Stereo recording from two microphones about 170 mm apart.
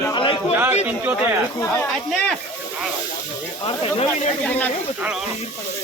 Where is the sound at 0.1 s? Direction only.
30° left (ahead or behind).